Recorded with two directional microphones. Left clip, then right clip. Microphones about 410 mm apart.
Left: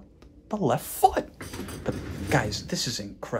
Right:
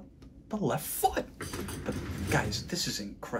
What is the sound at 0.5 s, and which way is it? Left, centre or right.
Speech, centre.